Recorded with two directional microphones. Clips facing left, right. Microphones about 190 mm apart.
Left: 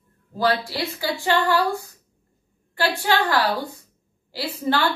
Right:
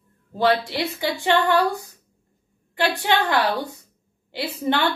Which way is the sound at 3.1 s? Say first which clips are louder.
Even; 20° right (ahead or behind).